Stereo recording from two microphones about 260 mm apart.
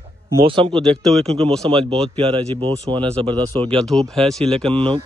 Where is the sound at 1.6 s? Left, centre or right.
Centre.